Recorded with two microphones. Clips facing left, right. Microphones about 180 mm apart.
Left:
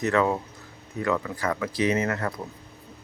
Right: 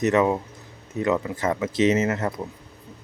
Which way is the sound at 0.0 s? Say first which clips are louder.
Right 3 dB; 20° right (ahead or behind).